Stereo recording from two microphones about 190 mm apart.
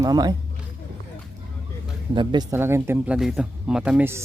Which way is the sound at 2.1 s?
25° right (ahead or behind).